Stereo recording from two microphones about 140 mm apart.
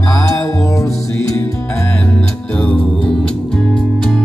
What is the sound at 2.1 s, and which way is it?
Music, 10° left (ahead or behind).